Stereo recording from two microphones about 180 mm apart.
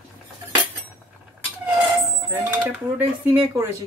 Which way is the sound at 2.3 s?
10° right (ahead or behind).